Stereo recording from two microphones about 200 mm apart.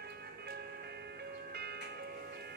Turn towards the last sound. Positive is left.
turn(degrees=-55)  # may be behind; listen again after turning